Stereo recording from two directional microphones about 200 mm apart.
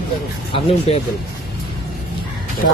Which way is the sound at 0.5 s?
30° left (ahead or behind).